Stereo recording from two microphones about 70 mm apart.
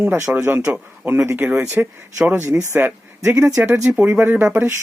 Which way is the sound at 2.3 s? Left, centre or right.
Right.